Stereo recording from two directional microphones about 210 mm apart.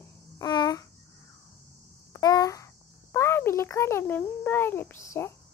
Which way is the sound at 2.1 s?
15° left (ahead or behind).